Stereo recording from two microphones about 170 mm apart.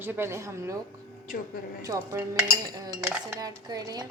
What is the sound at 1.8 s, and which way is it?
Speech, 20° right (ahead or behind).